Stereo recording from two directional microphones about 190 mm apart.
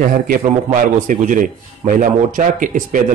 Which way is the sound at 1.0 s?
45° right (ahead or behind).